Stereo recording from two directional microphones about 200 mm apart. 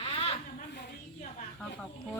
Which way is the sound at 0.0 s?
30° left (ahead or behind).